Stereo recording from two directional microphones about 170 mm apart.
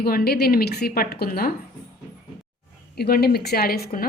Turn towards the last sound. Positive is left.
turn(degrees=60)  # may be behind; listen again after turning